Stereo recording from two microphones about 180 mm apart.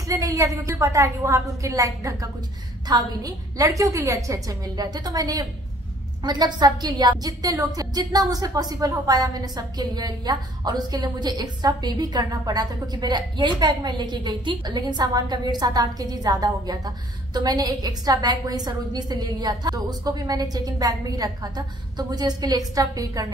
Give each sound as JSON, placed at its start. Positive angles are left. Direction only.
{"t": 0.0, "sound": "a woman's voice", "side_deg": -20}